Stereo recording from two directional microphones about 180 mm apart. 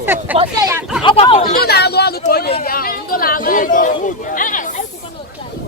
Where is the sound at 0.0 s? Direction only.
10° right (ahead or behind).